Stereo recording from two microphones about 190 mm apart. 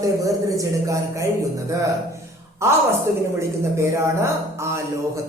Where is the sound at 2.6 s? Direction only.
15° right (ahead or behind).